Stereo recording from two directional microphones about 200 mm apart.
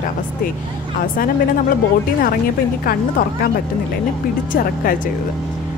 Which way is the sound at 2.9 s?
50° left (ahead or behind).